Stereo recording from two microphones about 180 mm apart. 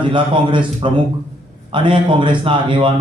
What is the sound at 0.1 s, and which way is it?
A man's voice, 30° right (ahead or behind).